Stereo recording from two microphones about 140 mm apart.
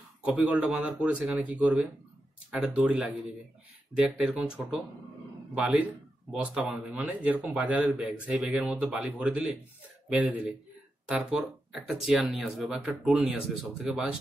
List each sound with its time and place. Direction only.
0.2 s a man's voice: 5° right (ahead or behind)
6.3 s a man's voice: 5° right (ahead or behind)